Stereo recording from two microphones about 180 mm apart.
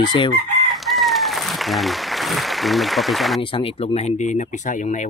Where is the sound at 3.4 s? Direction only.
30° left (ahead or behind).